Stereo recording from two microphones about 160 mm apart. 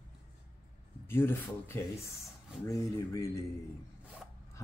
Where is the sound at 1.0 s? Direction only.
15° left (ahead or behind).